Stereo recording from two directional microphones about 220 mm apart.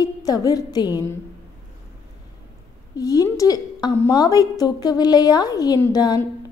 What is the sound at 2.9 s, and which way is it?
A woman's voice, 15° left (ahead or behind).